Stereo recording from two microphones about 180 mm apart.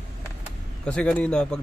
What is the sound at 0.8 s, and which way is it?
Speech, 5° left (ahead or behind).